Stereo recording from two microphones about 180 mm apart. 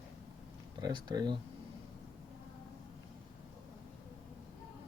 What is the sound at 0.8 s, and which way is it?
Speech, 20° right (ahead or behind).